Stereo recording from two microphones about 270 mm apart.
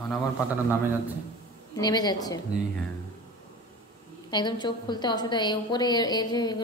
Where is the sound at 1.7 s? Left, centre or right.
Centre.